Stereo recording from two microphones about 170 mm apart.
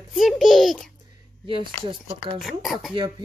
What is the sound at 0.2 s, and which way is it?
Speech, centre (ahead or behind).